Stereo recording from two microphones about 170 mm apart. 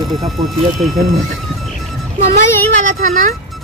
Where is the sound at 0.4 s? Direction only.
25° right (ahead or behind).